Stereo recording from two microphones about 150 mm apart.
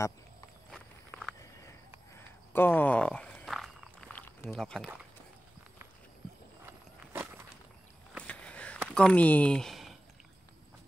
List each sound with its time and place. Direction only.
0.7 s walk: centre (ahead or behind)
2.5 s walk: 15° left (ahead or behind)
4.5 s speech: centre (ahead or behind)
6.6 s walk: 15° right (ahead or behind)
8.2 s a sound: 10° left (ahead or behind)
8.8 s speech: 5° left (ahead or behind)